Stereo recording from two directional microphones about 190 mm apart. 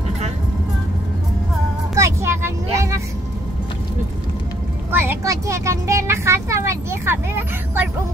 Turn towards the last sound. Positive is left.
turn(degrees=-10)  # may be behind; listen again after turning